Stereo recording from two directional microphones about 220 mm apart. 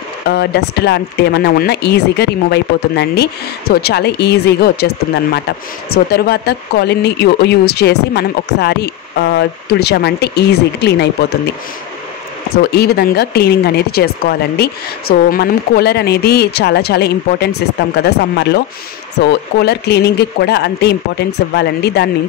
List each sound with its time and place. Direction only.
0.3 s a woman's voice: 50° left (ahead or behind)
12.7 s a woman's voice: 45° left (ahead or behind)